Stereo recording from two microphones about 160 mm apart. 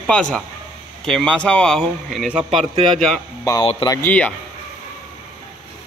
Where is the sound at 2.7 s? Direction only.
35° right (ahead or behind).